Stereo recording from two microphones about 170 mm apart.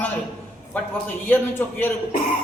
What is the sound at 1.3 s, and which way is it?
Speech, 10° left (ahead or behind).